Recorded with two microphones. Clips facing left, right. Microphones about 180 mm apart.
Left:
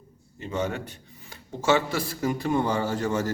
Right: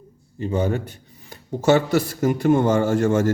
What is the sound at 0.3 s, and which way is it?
A man's voice, 35° right (ahead or behind).